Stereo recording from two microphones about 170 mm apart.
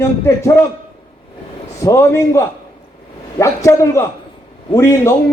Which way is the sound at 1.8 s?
15° left (ahead or behind).